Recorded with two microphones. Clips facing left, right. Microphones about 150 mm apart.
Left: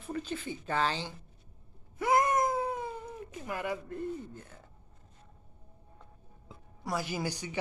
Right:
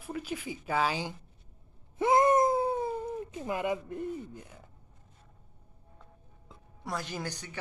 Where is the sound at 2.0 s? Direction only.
25° right (ahead or behind).